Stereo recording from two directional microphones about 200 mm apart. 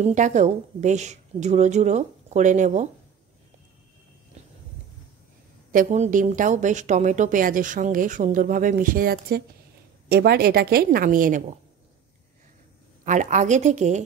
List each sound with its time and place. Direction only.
0.0 s a woman's voice: 35° right (ahead or behind)
5.7 s a woman's voice: 40° right (ahead or behind)
13.0 s a woman's voice: 40° right (ahead or behind)